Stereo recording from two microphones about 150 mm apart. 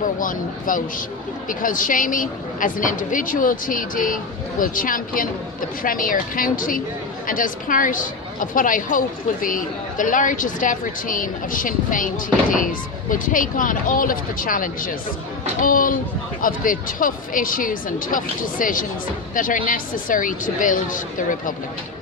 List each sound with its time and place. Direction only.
0.0 s a woman's voice: 65° left (ahead or behind)